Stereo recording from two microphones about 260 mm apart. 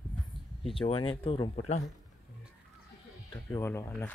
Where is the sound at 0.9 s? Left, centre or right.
Left.